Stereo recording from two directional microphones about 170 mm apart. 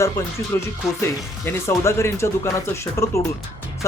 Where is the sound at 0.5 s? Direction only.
15° left (ahead or behind).